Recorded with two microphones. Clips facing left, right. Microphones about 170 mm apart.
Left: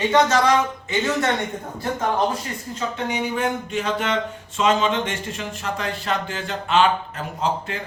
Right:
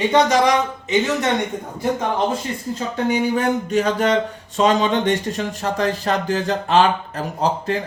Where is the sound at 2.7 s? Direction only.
40° right (ahead or behind).